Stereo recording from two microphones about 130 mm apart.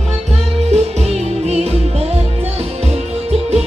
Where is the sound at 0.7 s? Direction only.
55° right (ahead or behind).